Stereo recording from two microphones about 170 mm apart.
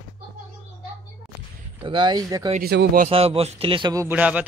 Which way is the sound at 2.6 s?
70° right (ahead or behind).